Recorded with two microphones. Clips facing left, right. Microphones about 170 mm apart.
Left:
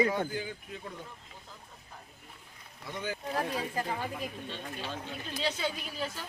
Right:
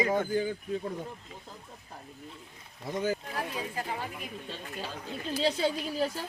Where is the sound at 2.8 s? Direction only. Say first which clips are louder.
Right 7 dB; 45° right (ahead or behind).